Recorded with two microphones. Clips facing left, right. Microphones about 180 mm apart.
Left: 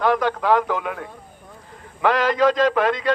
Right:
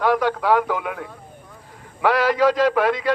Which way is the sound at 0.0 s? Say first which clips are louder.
Even; 10° right (ahead or behind).